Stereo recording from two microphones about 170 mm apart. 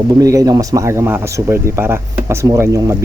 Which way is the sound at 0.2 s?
20° right (ahead or behind).